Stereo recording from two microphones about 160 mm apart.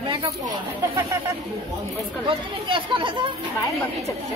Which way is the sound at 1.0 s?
20° right (ahead or behind).